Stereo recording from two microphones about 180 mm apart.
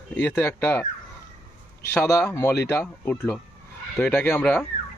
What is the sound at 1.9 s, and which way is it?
Speech, 15° left (ahead or behind).